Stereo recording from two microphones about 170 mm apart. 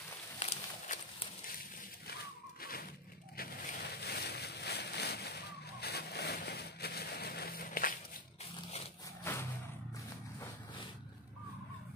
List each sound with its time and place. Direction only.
0.4 s walk: 40° left (ahead or behind)
2.6 s a sound: 60° left (ahead or behind)
9.2 s vehicle: 15° left (ahead or behind)